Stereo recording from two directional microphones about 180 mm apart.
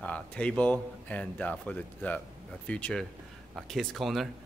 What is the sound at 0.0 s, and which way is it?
Speech, 5° left (ahead or behind).